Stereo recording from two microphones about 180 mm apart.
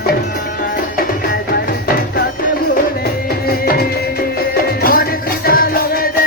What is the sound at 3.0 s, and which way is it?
Music, 60° left (ahead or behind).